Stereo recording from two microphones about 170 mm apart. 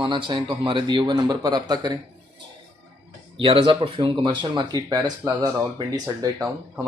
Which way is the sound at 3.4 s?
30° right (ahead or behind).